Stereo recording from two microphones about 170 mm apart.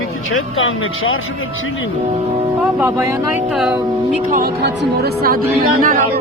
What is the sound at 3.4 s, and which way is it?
Speech, centre (ahead or behind).